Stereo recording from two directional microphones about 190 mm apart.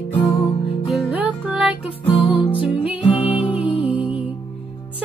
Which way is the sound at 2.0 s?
30° left (ahead or behind).